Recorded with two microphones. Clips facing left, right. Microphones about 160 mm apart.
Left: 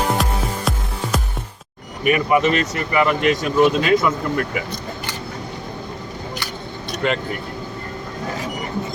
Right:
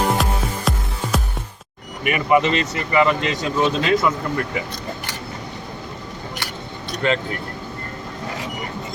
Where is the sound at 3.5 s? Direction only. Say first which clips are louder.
Left 3 dB; 15° left (ahead or behind).